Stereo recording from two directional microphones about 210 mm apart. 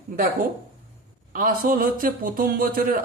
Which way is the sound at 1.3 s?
40° right (ahead or behind).